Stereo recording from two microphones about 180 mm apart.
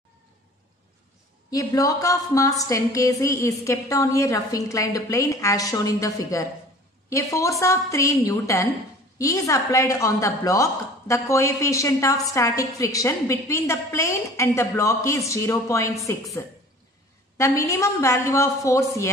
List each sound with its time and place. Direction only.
1.5 s a woman's voice: 20° left (ahead or behind)
17.4 s a woman's voice: 15° left (ahead or behind)